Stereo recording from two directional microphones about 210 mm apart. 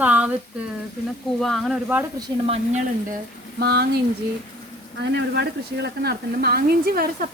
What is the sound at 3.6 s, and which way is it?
Speech, 50° right (ahead or behind).